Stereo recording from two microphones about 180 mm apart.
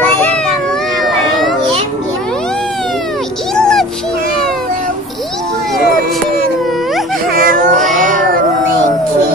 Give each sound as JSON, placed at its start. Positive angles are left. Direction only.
{"t": 0.0, "sound": "cat", "side_deg": 10}
{"t": 3.5, "sound": "music", "side_deg": 5}
{"t": 7.3, "sound": "baby cry", "side_deg": -50}
{"t": 7.8, "sound": "child singing", "side_deg": 0}